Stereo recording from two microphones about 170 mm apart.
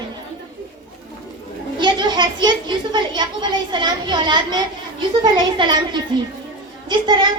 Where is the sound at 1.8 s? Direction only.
25° right (ahead or behind).